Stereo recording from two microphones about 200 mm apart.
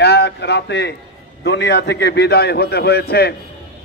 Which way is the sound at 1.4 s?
60° left (ahead or behind).